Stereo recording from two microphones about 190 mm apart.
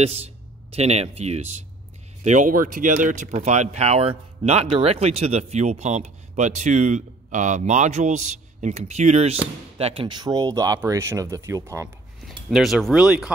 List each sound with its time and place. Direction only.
0.0 s speech: 35° right (ahead or behind); by 11.9 s 15° right (ahead or behind)
12.3 s speech: centre (ahead or behind)